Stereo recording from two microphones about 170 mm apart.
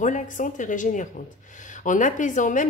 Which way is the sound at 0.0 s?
50° left (ahead or behind).